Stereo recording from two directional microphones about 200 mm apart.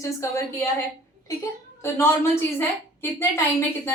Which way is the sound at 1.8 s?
15° left (ahead or behind).